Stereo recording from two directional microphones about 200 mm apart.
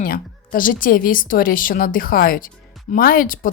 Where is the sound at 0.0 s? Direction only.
45° left (ahead or behind).